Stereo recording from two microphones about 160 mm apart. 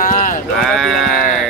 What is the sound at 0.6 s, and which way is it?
Sheep, centre (ahead or behind).